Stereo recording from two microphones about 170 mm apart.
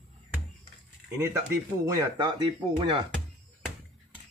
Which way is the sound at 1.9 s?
20° right (ahead or behind).